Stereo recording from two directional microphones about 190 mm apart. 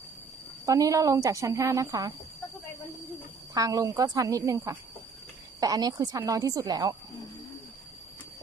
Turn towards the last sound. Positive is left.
turn(degrees=-20)  # may be behind; listen again after turning